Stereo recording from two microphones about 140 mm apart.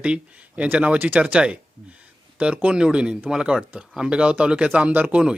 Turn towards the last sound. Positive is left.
turn(degrees=-10)  # may be behind; listen again after turning